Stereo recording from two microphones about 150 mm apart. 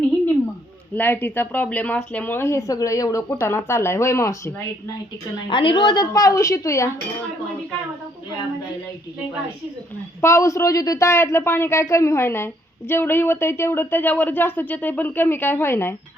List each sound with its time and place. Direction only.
0.9 s speech: 15° left (ahead or behind)
5.5 s a woman's voice: 35° left (ahead or behind)
10.2 s speech: 20° left (ahead or behind)